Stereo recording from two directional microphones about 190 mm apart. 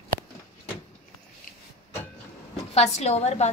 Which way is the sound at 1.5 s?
45° left (ahead or behind).